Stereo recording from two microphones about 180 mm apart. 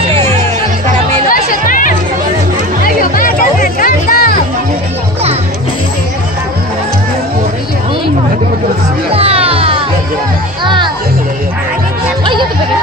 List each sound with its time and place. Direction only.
1.3 s music: 50° left (ahead or behind)
9.1 s music: 30° right (ahead or behind)